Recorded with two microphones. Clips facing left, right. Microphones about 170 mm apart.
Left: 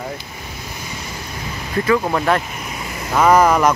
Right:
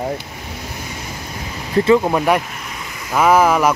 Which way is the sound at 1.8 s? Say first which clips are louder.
Right 4 dB; 25° right (ahead or behind).